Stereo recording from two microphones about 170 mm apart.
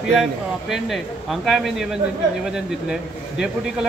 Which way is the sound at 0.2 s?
Centre (ahead or behind).